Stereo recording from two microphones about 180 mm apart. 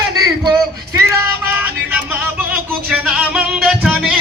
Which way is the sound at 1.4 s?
10° right (ahead or behind).